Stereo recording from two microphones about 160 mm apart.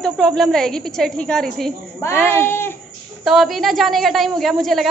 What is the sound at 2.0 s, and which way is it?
Speech, 15° left (ahead or behind).